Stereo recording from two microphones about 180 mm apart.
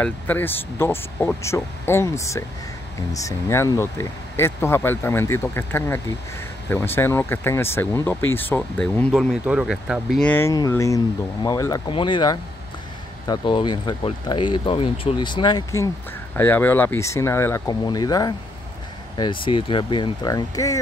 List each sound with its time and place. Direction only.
0.0 s speech: 10° left (ahead or behind)